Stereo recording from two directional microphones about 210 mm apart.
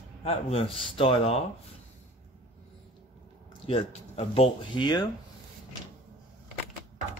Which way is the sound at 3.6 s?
30° left (ahead or behind).